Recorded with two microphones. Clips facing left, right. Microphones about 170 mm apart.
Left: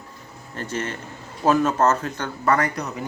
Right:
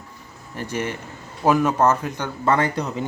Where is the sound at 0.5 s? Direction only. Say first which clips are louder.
Right 2 dB; 10° right (ahead or behind).